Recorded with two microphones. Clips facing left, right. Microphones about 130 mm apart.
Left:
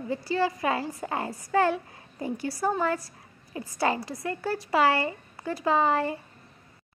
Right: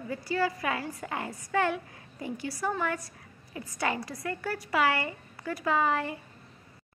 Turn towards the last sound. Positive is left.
turn(degrees=30)  # may be behind; listen again after turning